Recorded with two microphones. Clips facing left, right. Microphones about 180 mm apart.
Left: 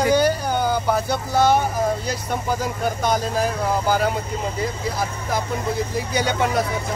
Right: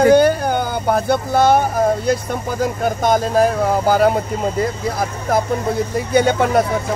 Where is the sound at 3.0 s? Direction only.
50° right (ahead or behind).